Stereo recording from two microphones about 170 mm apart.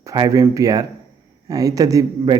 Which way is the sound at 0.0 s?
20° right (ahead or behind).